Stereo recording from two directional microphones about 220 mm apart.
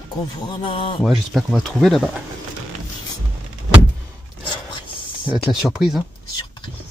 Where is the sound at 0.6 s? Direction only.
25° left (ahead or behind).